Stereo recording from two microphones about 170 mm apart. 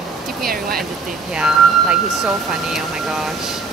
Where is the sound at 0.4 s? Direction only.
60° right (ahead or behind).